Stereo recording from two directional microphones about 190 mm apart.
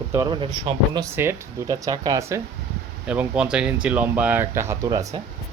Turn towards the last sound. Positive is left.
turn(degrees=-20)  # may be behind; listen again after turning